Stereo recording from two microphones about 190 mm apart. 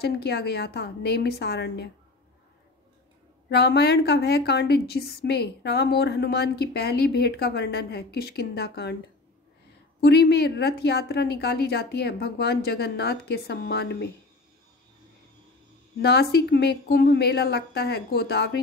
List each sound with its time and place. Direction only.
0.0 s a woman's voice: 60° left (ahead or behind)
3.4 s a woman's voice: 60° left (ahead or behind)
9.9 s a woman's voice: 60° left (ahead or behind)
16.0 s a woman's voice: 60° left (ahead or behind)